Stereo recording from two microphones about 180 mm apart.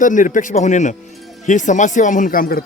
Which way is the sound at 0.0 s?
45° left (ahead or behind).